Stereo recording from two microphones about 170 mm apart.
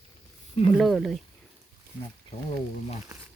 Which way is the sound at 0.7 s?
Centre (ahead or behind).